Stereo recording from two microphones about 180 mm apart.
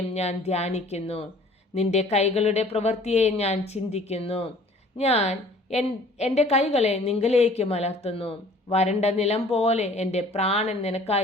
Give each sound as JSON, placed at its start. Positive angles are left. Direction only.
{"t": 0.1, "sound": "a woman's voice", "side_deg": 35}